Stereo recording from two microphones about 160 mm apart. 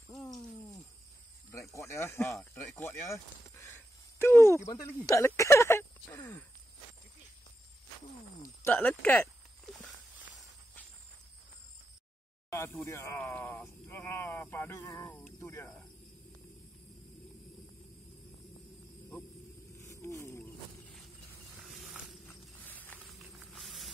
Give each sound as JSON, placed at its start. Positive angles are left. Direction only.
{"t": 1.5, "sound": "speech", "side_deg": 20}
{"t": 2.8, "sound": "a sound", "side_deg": 15}
{"t": 4.8, "sound": "speech", "side_deg": 20}
{"t": 8.6, "sound": "speech", "side_deg": 10}
{"t": 12.4, "sound": "speech", "side_deg": 15}
{"t": 19.9, "sound": "a sound", "side_deg": 20}
{"t": 21.6, "sound": "vehicle", "side_deg": 0}
{"t": 22.6, "sound": "snake", "side_deg": 10}
{"t": 23.0, "sound": "a sound", "side_deg": 0}